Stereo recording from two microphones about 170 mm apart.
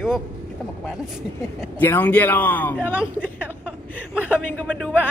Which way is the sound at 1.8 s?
10° left (ahead or behind).